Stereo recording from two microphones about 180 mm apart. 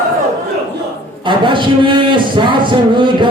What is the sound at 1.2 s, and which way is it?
Speech, 25° right (ahead or behind).